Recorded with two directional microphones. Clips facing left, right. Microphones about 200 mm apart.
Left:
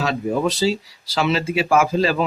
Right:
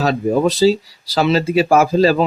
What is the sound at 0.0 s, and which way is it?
Speech, 35° right (ahead or behind).